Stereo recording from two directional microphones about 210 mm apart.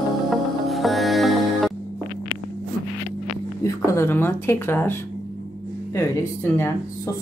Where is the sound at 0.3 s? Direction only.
Centre (ahead or behind).